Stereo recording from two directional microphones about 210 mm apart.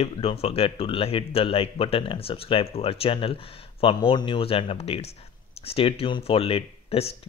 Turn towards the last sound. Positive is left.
turn(degrees=30)  # may be behind; listen again after turning